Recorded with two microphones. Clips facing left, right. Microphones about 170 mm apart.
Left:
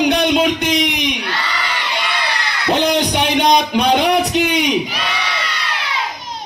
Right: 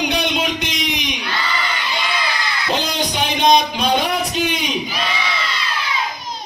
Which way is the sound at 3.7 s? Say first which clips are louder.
Left 5 dB; 65° left (ahead or behind).